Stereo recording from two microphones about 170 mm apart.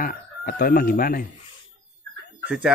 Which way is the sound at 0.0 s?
55° left (ahead or behind).